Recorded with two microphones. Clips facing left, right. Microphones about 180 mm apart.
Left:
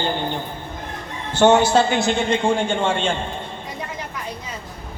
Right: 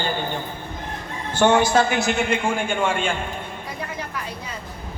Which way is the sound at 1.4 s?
20° left (ahead or behind).